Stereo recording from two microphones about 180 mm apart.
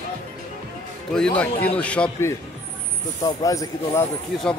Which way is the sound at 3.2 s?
20° left (ahead or behind).